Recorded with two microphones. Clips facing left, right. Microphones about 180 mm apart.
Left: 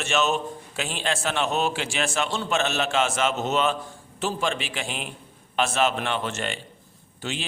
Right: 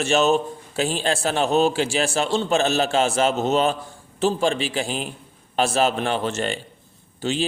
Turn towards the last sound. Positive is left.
turn(degrees=-30)  # may be behind; listen again after turning